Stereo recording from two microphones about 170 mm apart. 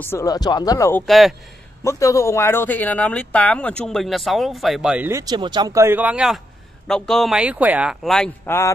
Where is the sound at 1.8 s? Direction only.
20° left (ahead or behind); by 5.1 s 5° right (ahead or behind).